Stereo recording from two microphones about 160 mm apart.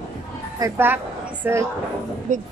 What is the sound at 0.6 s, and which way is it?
A woman's voice, 10° right (ahead or behind).